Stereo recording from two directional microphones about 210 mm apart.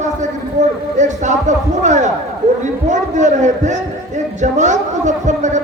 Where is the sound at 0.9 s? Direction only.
35° right (ahead or behind).